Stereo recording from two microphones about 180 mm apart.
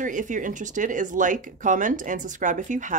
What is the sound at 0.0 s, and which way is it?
Speech, 45° right (ahead or behind).